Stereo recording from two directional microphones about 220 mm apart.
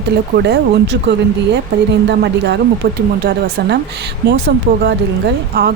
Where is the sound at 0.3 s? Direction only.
50° right (ahead or behind).